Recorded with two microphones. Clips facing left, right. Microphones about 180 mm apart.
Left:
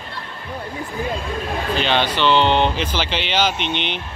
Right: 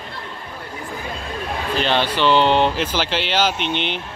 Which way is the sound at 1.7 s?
Centre (ahead or behind).